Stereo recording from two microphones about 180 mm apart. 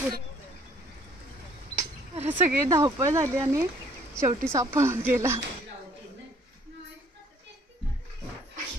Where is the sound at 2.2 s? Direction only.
15° right (ahead or behind).